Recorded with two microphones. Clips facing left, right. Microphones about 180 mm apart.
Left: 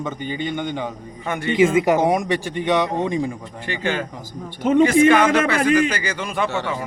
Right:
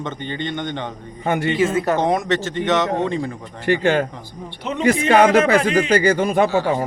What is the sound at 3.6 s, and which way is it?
Speech, 45° right (ahead or behind).